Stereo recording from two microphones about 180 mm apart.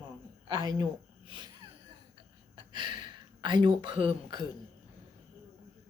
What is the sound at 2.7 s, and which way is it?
Speech, 25° right (ahead or behind).